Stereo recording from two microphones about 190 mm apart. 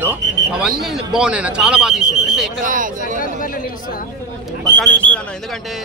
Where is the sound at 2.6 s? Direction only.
45° right (ahead or behind).